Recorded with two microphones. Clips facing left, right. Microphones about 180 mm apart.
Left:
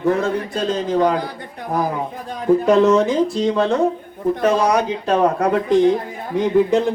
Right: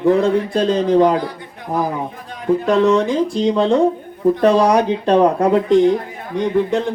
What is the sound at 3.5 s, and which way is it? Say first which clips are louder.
Speech: right 3 dB; 20° right (ahead or behind).